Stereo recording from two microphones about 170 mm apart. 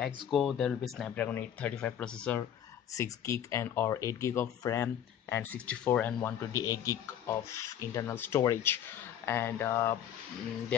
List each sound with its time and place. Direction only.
0.3 s speech: centre (ahead or behind)
2.9 s speech: 15° left (ahead or behind)